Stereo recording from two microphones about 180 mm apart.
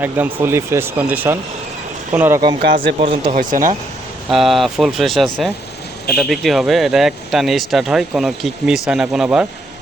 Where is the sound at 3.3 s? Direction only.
50° right (ahead or behind).